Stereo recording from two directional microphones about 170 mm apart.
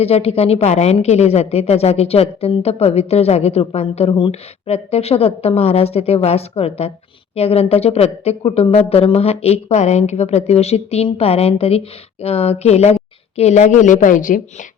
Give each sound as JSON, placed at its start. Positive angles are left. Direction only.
{"t": 0.0, "sound": "speech", "side_deg": 35}